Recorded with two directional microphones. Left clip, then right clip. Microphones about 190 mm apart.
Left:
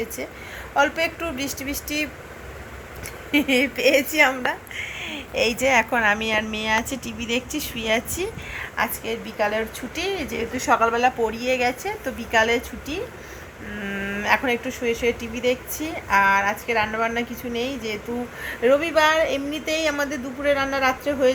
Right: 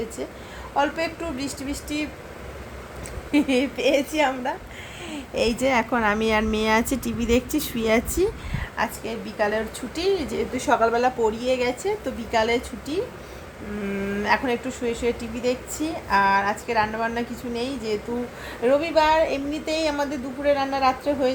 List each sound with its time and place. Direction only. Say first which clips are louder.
0.8 s a woman's voice: left 3 dB; centre (ahead or behind)
3.3 s a woman's voice: left 2 dB; 5° right (ahead or behind)
4.8 s a woman's voice: left 5 dB; 30° right (ahead or behind)
8.7 s a woman's voice: left 2 dB; 5° right (ahead or behind)
14.2 s a woman's voice: left 2 dB; centre (ahead or behind)